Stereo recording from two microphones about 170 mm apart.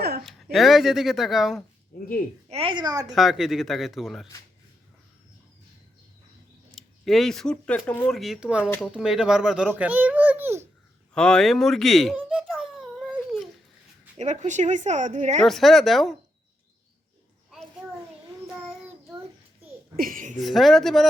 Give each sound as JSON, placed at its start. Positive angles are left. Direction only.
{"t": 0.0, "sound": "a sound", "side_deg": -65}
{"t": 0.5, "sound": "speech", "side_deg": 0}
{"t": 2.5, "sound": "speech", "side_deg": -30}
{"t": 3.1, "sound": "speech", "side_deg": 0}
{"t": 6.7, "sound": "a child's voice", "side_deg": 0}
{"t": 11.1, "sound": "speech", "side_deg": 5}
{"t": 12.1, "sound": "a sound", "side_deg": -5}
{"t": 14.2, "sound": "a woman's voice", "side_deg": -45}
{"t": 15.4, "sound": "speech", "side_deg": 0}
{"t": 20.0, "sound": "speech", "side_deg": -55}
{"t": 20.4, "sound": "speech", "side_deg": 0}